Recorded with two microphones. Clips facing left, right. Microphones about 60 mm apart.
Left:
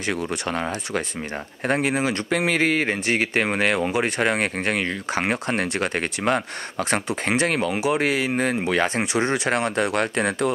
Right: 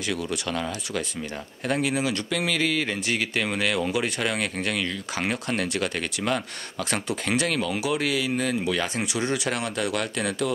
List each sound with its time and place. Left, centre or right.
0.0 s speech: left